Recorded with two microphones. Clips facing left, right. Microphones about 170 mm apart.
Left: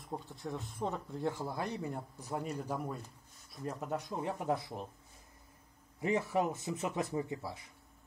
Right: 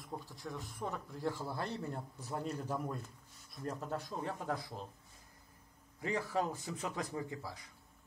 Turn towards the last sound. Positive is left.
turn(degrees=25)  # may be behind; listen again after turning